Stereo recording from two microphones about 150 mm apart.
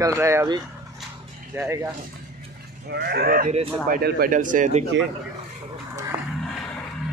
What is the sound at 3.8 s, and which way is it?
Speech, 70° right (ahead or behind).